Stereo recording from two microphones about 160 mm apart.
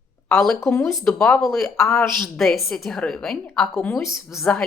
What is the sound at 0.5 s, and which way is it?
Speech, 15° left (ahead or behind).